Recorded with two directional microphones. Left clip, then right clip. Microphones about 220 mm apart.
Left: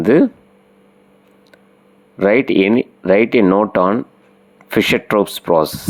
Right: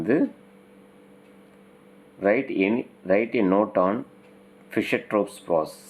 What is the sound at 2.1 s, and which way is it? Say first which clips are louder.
Speech: left 9 dB; 40° left (ahead or behind).